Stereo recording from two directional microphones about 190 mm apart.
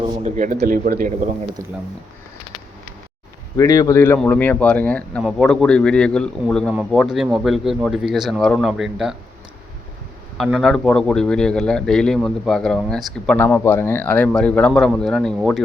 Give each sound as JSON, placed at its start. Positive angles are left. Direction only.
{"t": 0.2, "sound": "speech", "side_deg": -40}
{"t": 0.6, "sound": "speech", "side_deg": -50}
{"t": 1.6, "sound": "speech", "side_deg": -15}
{"t": 3.6, "sound": "speech", "side_deg": 15}
{"t": 10.3, "sound": "speech", "side_deg": 0}